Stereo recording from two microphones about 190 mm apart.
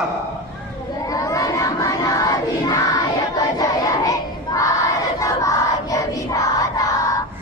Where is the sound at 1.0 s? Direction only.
20° left (ahead or behind).